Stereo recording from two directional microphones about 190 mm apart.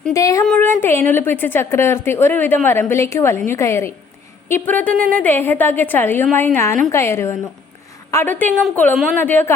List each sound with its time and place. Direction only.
0.1 s a woman's voice: 15° left (ahead or behind)
0.4 s a sound: 5° left (ahead or behind)
0.8 s a woman's voice: 10° left (ahead or behind)